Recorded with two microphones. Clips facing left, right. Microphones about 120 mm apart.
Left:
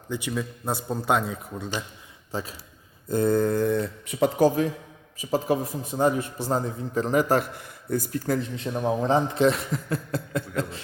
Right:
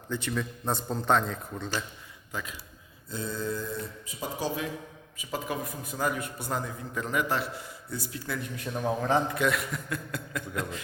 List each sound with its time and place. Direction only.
0.1 s speech: 10° left (ahead or behind)
2.3 s a man's voice: 35° left (ahead or behind)
3.1 s speech: 55° left (ahead or behind)
4.4 s a man's voice: 40° left (ahead or behind)
8.4 s a man's voice: 25° left (ahead or behind)